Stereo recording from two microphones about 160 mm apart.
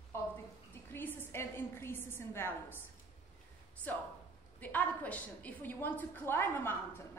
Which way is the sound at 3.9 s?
10° left (ahead or behind).